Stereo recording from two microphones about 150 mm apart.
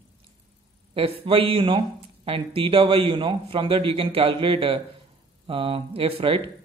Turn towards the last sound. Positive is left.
turn(degrees=-40)  # may be behind; listen again after turning